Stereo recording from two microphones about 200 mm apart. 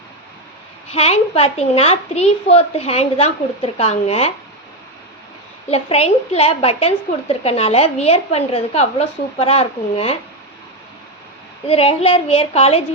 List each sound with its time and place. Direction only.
0.9 s a woman's voice: 30° left (ahead or behind)
5.6 s a woman's voice: 30° left (ahead or behind)
11.7 s a woman's voice: 30° left (ahead or behind)